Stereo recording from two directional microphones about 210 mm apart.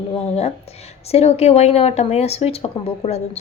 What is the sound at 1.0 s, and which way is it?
A woman's voice, 30° left (ahead or behind).